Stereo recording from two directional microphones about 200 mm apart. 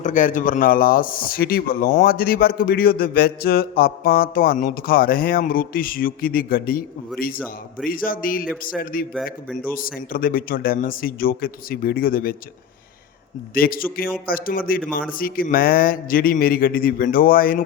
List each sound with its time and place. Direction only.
0.0 s speech: 40° left (ahead or behind)
7.9 s speech: 45° left (ahead or behind)
10.1 s speech: 45° left (ahead or behind)
13.5 s speech: 45° left (ahead or behind)